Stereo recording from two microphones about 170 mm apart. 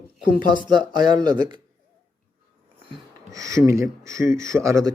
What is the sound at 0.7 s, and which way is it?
Speech, 25° right (ahead or behind).